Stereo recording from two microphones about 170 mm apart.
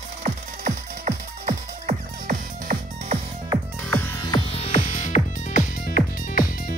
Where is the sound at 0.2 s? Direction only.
40° right (ahead or behind).